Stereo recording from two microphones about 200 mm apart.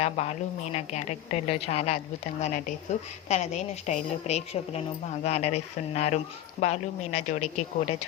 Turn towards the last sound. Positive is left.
turn(degrees=35)  # may be behind; listen again after turning